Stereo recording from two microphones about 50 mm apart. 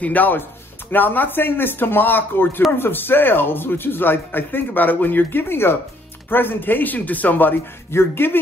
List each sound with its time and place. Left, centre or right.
0.0 s speech: left
7.9 s speech: left